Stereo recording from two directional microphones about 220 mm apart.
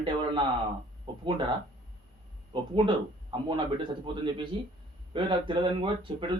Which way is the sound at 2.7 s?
20° right (ahead or behind).